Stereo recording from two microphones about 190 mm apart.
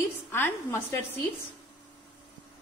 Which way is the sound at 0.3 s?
10° left (ahead or behind).